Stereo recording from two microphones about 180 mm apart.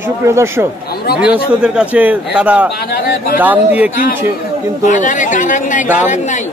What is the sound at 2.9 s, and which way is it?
Speech, 60° left (ahead or behind).